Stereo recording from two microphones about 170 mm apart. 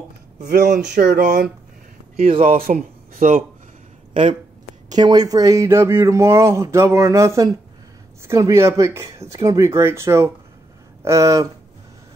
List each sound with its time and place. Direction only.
0.4 s speech: 75° right (ahead or behind)
2.1 s speech: 35° right (ahead or behind)
2.4 s speech: 50° right (ahead or behind)
4.8 s speech: 25° right (ahead or behind)